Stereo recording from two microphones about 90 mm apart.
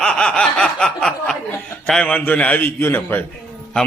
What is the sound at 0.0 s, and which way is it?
Snicker, 10° left (ahead or behind).